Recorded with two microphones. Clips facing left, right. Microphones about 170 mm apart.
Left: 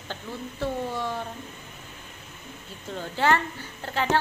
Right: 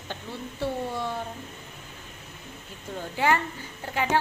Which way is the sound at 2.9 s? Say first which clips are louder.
Left 1 dB; 10° right (ahead or behind).